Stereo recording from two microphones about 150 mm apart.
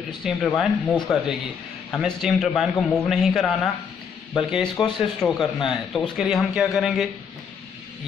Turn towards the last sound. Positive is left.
turn(degrees=0)  # may be behind; listen again after turning